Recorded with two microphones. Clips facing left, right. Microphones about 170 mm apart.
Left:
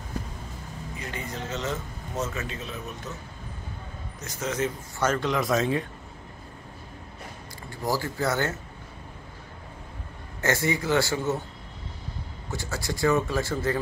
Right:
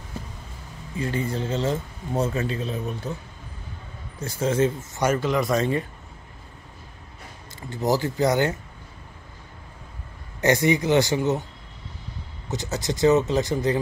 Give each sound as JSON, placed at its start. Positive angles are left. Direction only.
{"t": 0.9, "sound": "speech", "side_deg": -30}
{"t": 4.2, "sound": "speech", "side_deg": -30}
{"t": 5.0, "sound": "speech", "side_deg": -5}
{"t": 7.7, "sound": "speech", "side_deg": -20}
{"t": 10.4, "sound": "speech", "side_deg": -20}
{"t": 12.4, "sound": "speech", "side_deg": -20}